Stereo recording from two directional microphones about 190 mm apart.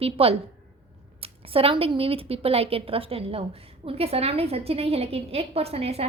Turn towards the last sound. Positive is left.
turn(degrees=-30)  # may be behind; listen again after turning